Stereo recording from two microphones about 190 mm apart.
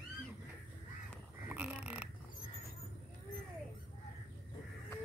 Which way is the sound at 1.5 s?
10° right (ahead or behind).